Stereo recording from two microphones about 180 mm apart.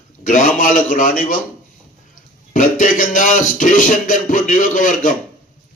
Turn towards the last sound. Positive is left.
turn(degrees=45)  # may be behind; listen again after turning